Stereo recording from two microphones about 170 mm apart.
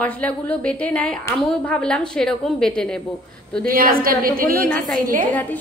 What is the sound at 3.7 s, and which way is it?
A woman's voice, 60° right (ahead or behind).